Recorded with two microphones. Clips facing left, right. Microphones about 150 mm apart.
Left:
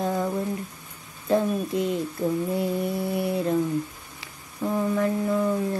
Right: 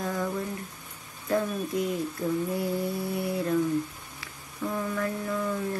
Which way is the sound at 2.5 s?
20° left (ahead or behind).